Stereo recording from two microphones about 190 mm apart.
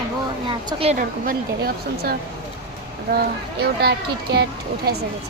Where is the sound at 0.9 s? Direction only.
50° right (ahead or behind).